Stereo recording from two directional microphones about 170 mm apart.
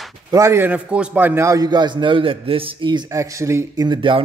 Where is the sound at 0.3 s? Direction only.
15° right (ahead or behind).